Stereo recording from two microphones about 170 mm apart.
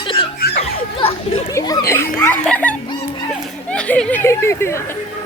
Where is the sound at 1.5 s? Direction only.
20° left (ahead or behind).